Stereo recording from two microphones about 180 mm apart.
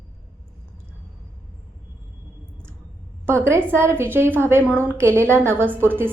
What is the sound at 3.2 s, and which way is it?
A woman's voice, 15° right (ahead or behind).